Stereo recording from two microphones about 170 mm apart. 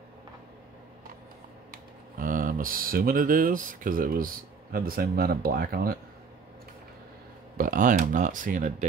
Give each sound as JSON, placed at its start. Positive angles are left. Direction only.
{"t": 1.7, "sound": "speech", "side_deg": -55}
{"t": 7.5, "sound": "speech", "side_deg": -55}